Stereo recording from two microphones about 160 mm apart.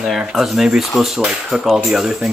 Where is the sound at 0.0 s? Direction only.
Centre (ahead or behind).